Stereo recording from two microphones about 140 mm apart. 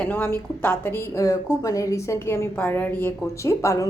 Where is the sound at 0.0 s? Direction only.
15° left (ahead or behind).